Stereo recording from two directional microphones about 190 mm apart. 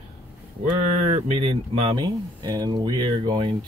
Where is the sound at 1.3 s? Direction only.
30° right (ahead or behind).